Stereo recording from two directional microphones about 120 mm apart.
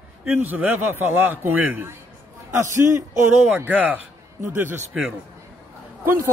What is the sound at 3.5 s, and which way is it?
A man's voice, 15° right (ahead or behind).